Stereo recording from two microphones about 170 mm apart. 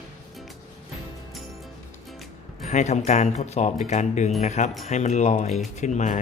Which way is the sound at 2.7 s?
40° left (ahead or behind).